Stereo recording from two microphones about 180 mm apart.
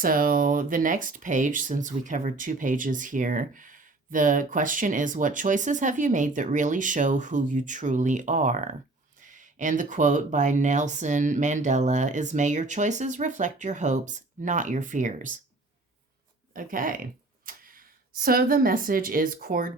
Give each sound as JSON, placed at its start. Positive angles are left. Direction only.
{"t": 0.0, "sound": "speech", "side_deg": -50}
{"t": 16.6, "sound": "speech", "side_deg": -50}